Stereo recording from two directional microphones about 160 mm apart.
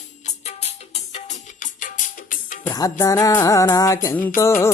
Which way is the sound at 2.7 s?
20° left (ahead or behind).